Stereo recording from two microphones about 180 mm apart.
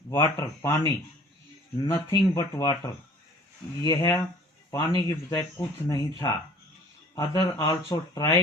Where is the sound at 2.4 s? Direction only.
15° left (ahead or behind).